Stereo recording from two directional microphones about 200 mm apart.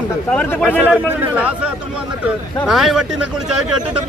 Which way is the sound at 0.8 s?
10° right (ahead or behind).